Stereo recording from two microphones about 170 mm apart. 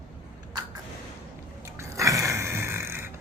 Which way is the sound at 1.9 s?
20° right (ahead or behind).